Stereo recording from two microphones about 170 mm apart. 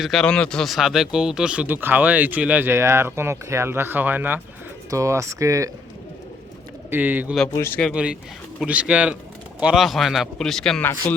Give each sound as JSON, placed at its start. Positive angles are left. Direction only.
{"t": 0.0, "sound": "speech", "side_deg": 0}
{"t": 6.9, "sound": "speech", "side_deg": -10}
{"t": 7.5, "sound": "speech", "side_deg": 15}
{"t": 7.8, "sound": "speech", "side_deg": 0}